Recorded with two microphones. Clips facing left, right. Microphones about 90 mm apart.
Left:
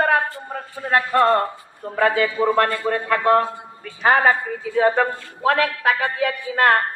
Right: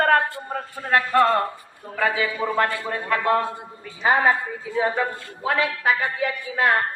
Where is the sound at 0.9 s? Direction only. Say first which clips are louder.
Left 1 dB; 25° left (ahead or behind).